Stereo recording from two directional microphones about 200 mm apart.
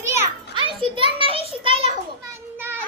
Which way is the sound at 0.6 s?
25° right (ahead or behind).